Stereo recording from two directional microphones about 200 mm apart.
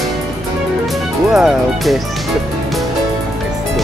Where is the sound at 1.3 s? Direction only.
Centre (ahead or behind).